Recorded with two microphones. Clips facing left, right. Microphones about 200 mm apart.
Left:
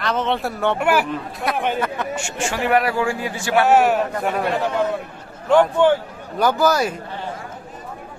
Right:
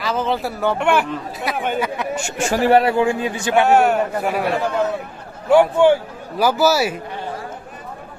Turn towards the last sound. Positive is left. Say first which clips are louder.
# right 1 dB
turn(degrees=-5)  # may be behind; listen again after turning